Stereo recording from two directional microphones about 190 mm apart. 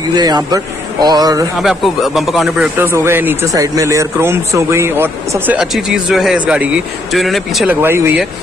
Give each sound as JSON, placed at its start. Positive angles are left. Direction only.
{"t": 0.1, "sound": "a man's voice", "side_deg": -20}
{"t": 1.6, "sound": "speech", "side_deg": 0}
{"t": 2.9, "sound": "speech", "side_deg": -10}
{"t": 7.8, "sound": "speech", "side_deg": -15}